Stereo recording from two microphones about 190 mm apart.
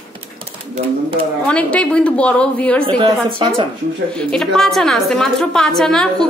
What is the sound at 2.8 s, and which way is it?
Speech, 20° right (ahead or behind).